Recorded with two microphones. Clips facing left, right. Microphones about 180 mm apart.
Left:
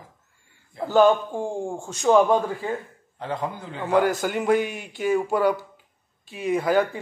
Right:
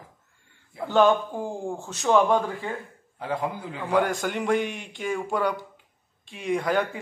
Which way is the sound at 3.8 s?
5° left (ahead or behind).